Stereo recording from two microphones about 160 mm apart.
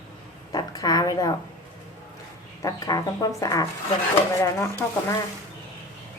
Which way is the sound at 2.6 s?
25° left (ahead or behind).